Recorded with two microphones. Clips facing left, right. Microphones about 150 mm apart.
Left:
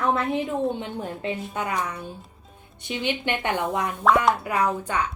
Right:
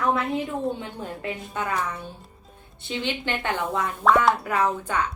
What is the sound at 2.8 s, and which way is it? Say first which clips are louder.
A woman's voice: left 1 dB; 15° left (ahead or behind).